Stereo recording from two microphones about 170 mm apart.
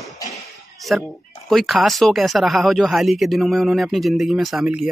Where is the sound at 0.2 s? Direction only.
20° left (ahead or behind).